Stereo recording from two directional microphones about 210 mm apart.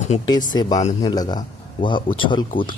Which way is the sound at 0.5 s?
20° left (ahead or behind).